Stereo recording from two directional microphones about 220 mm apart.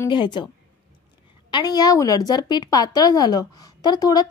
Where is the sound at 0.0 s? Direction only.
20° left (ahead or behind).